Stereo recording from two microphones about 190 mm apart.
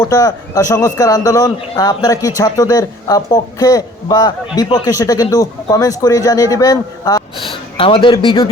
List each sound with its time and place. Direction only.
0.0 s speech: 20° left (ahead or behind)